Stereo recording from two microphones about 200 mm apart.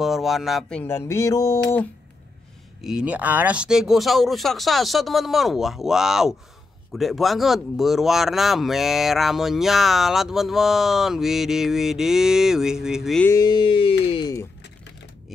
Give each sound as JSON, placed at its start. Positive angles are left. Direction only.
{"t": 0.0, "sound": "speech", "side_deg": 0}
{"t": 2.8, "sound": "speech", "side_deg": -5}
{"t": 13.3, "sound": "a sound", "side_deg": 20}